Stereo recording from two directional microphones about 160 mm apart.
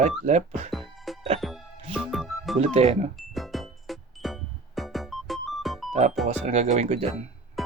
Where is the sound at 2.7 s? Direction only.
40° right (ahead or behind).